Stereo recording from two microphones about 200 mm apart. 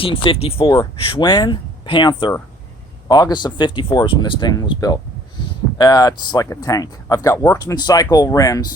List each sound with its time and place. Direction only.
0.0 s speech: 25° left (ahead or behind)